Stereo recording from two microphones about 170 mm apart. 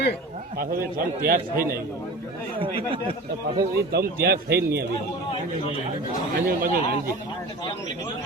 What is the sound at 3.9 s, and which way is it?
Speech, 65° right (ahead or behind).